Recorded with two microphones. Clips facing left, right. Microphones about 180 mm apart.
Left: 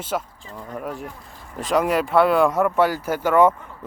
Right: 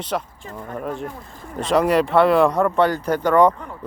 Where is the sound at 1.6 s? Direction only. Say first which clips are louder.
Right 3 dB; centre (ahead or behind).